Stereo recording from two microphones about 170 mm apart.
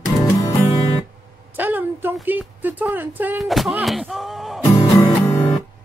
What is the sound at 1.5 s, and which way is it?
Speech, 10° right (ahead or behind).